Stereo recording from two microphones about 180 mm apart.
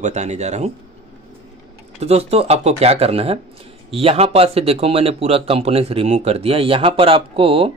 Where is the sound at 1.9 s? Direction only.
35° right (ahead or behind).